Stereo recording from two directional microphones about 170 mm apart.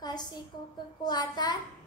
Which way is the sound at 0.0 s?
25° left (ahead or behind).